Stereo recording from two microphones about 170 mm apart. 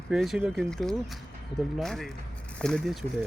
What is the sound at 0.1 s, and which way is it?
Speech, 5° right (ahead or behind).